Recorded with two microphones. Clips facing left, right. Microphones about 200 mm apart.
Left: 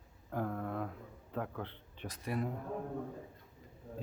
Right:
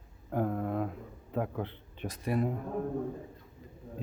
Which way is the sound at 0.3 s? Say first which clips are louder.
Right 6 dB; 20° right (ahead or behind).